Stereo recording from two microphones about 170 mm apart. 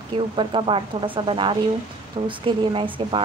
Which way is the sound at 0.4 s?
30° right (ahead or behind).